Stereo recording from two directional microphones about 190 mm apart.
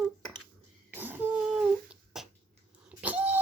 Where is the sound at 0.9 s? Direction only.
10° right (ahead or behind).